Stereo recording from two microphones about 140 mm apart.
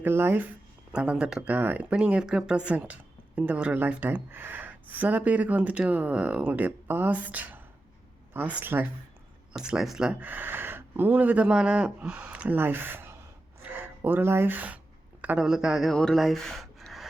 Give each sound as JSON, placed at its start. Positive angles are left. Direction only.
{"t": 0.0, "sound": "a woman's voice", "side_deg": -15}